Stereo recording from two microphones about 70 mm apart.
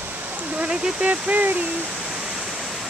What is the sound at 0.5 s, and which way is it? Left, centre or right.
Speech, centre.